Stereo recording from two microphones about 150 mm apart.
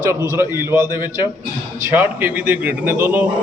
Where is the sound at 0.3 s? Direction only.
15° right (ahead or behind).